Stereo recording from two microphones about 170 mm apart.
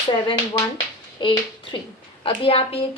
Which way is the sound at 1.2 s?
30° left (ahead or behind).